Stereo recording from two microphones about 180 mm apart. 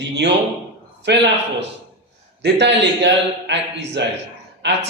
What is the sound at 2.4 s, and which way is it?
A man's voice, 75° right (ahead or behind).